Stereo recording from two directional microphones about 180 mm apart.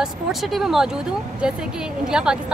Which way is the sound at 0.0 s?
Centre (ahead or behind).